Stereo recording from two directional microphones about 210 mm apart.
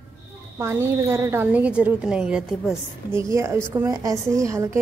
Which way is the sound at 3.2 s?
15° right (ahead or behind).